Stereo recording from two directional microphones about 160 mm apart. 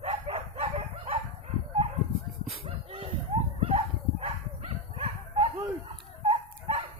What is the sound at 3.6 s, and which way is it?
Dog, 35° right (ahead or behind).